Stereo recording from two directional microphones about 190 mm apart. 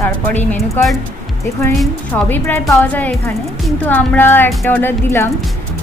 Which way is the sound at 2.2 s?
10° left (ahead or behind).